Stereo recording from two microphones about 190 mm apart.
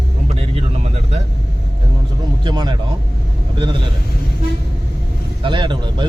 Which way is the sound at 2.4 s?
25° right (ahead or behind).